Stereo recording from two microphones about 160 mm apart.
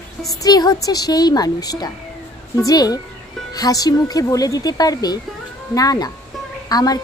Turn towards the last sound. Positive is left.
turn(degrees=25)  # may be behind; listen again after turning